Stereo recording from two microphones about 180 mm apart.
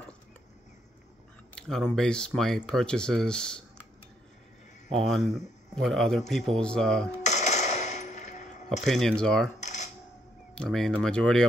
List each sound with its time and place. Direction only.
1.5 s speech: 5° left (ahead or behind)
4.9 s speech: centre (ahead or behind)
7.2 s a sound: 40° left (ahead or behind)
8.8 s speech: centre (ahead or behind)
9.6 s coin: 40° left (ahead or behind)
10.5 s speech: 5° left (ahead or behind)